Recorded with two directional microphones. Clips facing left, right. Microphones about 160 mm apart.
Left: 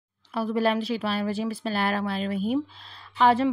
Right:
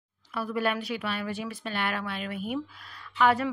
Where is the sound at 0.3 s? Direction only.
30° left (ahead or behind).